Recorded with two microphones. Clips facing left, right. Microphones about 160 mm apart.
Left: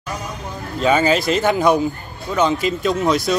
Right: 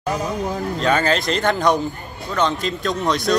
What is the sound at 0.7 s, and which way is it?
Speech, 5° left (ahead or behind).